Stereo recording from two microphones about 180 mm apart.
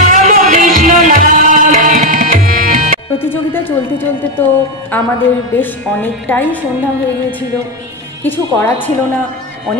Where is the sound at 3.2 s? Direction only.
10° left (ahead or behind).